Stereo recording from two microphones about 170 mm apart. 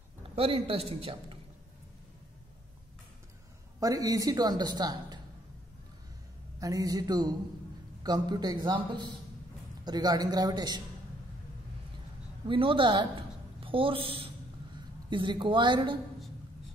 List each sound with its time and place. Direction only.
0.4 s a man's voice: 35° right (ahead or behind)
3.8 s a woman's voice: 20° right (ahead or behind)
6.6 s a woman's voice: 20° right (ahead or behind)
12.4 s a woman's voice: 30° right (ahead or behind)